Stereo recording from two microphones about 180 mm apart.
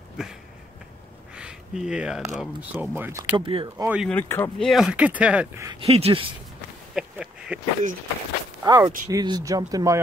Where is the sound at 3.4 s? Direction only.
30° right (ahead or behind).